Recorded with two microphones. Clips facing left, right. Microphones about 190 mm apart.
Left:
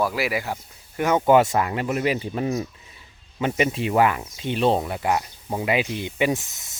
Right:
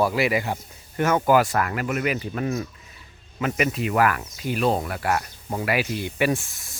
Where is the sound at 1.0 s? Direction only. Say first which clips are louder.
Left 2 dB; 20° left (ahead or behind).